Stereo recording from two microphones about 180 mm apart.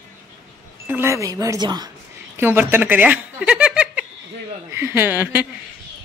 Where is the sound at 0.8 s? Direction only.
15° right (ahead or behind).